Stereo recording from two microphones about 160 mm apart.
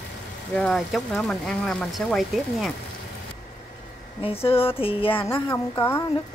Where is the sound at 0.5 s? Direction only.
Centre (ahead or behind).